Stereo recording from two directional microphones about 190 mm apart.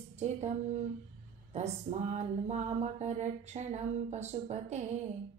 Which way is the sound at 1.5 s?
35° right (ahead or behind).